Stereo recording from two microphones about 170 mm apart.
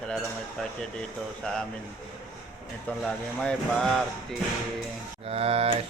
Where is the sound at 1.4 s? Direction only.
5° left (ahead or behind).